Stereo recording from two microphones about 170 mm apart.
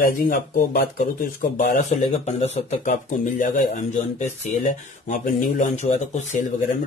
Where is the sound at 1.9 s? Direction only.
40° left (ahead or behind).